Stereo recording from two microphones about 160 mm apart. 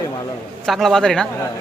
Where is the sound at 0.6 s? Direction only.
Centre (ahead or behind).